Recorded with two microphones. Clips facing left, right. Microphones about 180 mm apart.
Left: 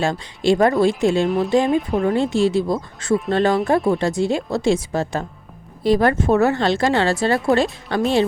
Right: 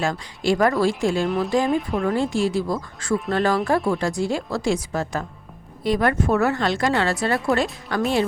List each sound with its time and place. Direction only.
0.0 s a woman's voice: 25° left (ahead or behind)